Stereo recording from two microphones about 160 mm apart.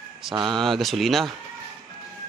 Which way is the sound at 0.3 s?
30° right (ahead or behind).